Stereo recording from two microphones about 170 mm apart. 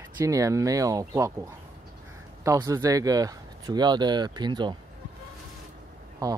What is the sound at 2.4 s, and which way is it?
Speech, 15° right (ahead or behind).